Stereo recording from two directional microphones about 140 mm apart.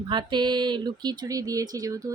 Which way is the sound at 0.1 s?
35° right (ahead or behind).